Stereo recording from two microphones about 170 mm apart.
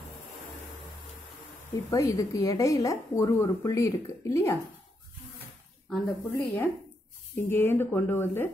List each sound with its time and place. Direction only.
1.9 s speech: 20° left (ahead or behind)
5.9 s speech: 5° left (ahead or behind)